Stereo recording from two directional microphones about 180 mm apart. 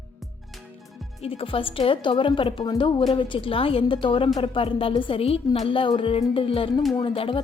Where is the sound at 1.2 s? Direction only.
30° left (ahead or behind).